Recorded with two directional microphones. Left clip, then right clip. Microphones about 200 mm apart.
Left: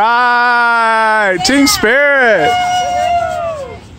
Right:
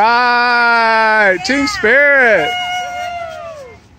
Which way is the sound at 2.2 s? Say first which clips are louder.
Left 2 dB; centre (ahead or behind).